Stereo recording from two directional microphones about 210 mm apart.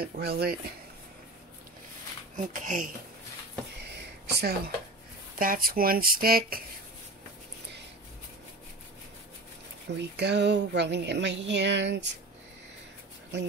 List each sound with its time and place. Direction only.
0.0 s speech: 50° right (ahead or behind)
2.3 s speech: 40° right (ahead or behind)
3.9 s a sound: 50° right (ahead or behind)
5.4 s speech: 40° right (ahead or behind)
9.9 s speech: 55° right (ahead or behind)